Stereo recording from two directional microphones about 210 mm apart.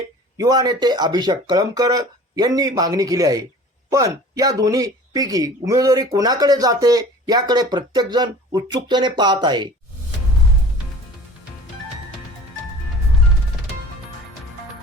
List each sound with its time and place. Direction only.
0.3 s speech: 15° right (ahead or behind)